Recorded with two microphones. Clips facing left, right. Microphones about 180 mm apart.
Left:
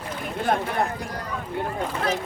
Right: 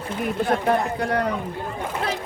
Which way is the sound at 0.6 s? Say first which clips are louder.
Right 5 dB; 65° right (ahead or behind).